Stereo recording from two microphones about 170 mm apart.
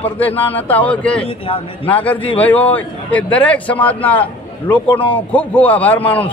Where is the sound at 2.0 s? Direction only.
10° left (ahead or behind).